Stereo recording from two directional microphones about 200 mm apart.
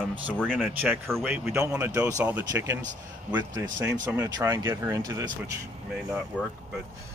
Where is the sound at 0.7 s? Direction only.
10° right (ahead or behind).